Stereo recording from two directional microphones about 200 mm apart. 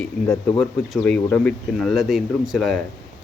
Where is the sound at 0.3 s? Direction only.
25° left (ahead or behind).